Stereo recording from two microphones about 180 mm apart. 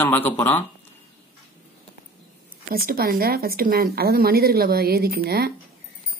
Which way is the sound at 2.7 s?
55° right (ahead or behind).